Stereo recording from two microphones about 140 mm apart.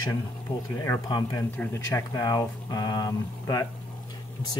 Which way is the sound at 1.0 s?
30° left (ahead or behind).